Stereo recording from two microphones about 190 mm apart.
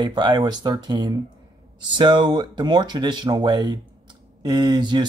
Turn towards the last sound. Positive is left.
turn(degrees=-25)  # may be behind; listen again after turning